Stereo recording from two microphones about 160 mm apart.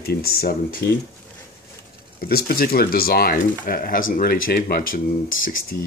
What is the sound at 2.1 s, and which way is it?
Speech, 70° left (ahead or behind).